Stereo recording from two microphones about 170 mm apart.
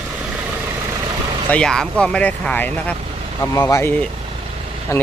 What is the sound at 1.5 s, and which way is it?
Speech, 5° left (ahead or behind).